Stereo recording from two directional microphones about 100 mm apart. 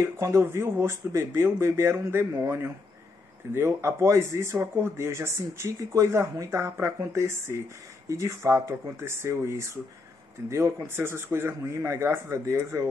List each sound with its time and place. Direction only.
0.0 s speech: 25° right (ahead or behind)